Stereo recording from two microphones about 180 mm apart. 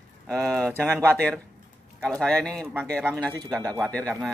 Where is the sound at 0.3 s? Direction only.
Centre (ahead or behind).